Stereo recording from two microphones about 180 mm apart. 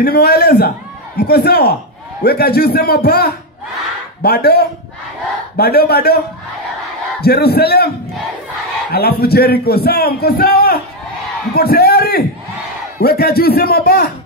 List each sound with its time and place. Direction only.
0.0 s a man's voice: 60° left (ahead or behind)
7.2 s a man's voice: 60° left (ahead or behind)
8.9 s a man's voice: 60° left (ahead or behind)